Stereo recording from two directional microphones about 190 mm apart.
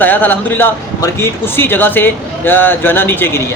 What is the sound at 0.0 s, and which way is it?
Speech, 10° left (ahead or behind).